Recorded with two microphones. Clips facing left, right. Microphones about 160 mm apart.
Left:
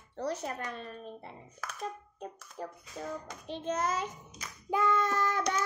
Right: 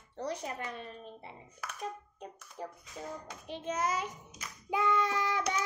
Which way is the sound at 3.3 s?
10° right (ahead or behind).